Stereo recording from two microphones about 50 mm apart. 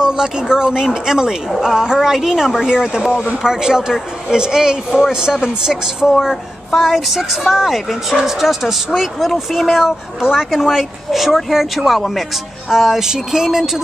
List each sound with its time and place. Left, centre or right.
0.0 s speech: centre